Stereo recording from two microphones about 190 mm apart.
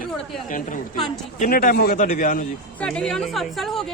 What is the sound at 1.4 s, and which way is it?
A man's voice, 50° left (ahead or behind).